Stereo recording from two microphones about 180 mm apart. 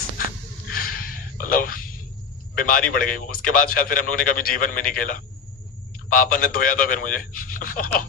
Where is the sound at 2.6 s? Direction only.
50° left (ahead or behind).